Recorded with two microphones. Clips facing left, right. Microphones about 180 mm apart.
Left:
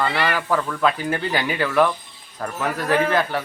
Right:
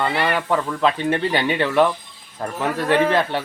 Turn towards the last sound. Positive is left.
turn(degrees=-30)  # may be behind; listen again after turning